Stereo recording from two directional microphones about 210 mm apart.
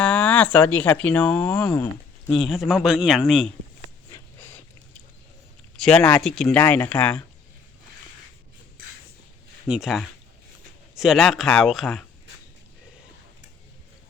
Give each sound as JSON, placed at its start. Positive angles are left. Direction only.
{"t": 0.0, "sound": "speech", "side_deg": 5}
{"t": 4.1, "sound": "a sound", "side_deg": 10}
{"t": 5.7, "sound": "speech", "side_deg": 5}
{"t": 9.6, "sound": "speech", "side_deg": -5}